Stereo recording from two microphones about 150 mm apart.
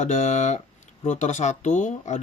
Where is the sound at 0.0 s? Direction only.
50° left (ahead or behind).